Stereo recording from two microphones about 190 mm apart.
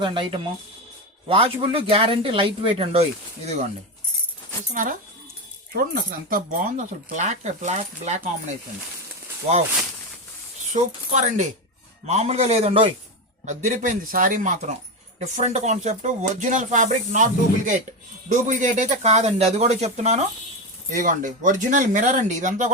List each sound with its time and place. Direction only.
0.0 s speech: 25° right (ahead or behind)
4.7 s a man's voice: 45° right (ahead or behind)
10.7 s speech: 40° right (ahead or behind)
13.4 s a man's voice: 40° right (ahead or behind)
18.3 s speech: 40° right (ahead or behind)